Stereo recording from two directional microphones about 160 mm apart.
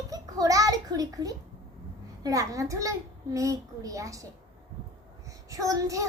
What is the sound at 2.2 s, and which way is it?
A child's voice, 20° right (ahead or behind).